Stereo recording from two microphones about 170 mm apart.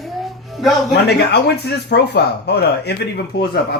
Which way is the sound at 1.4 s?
75° left (ahead or behind).